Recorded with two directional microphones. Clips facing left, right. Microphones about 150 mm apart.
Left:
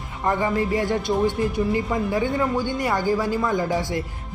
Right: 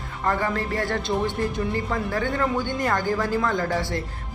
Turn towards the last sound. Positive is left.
turn(degrees=15)  # may be behind; listen again after turning